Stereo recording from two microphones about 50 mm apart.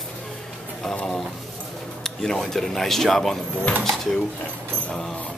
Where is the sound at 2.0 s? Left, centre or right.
Centre.